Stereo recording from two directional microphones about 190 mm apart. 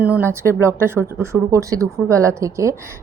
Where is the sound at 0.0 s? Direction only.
10° right (ahead or behind).